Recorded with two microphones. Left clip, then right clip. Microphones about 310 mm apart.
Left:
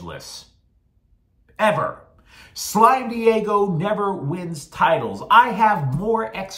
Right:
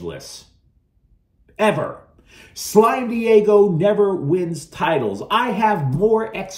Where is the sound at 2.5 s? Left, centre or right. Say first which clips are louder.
Even; left.